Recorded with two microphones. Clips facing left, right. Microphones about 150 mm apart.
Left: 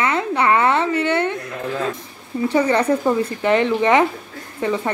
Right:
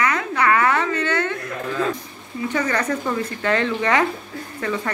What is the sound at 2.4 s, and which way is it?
A woman's voice, 30° left (ahead or behind).